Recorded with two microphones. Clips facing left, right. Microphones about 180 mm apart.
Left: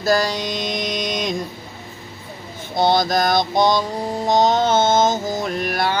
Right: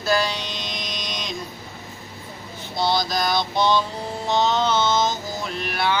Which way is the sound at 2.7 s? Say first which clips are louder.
Left 6 dB; 50° left (ahead or behind).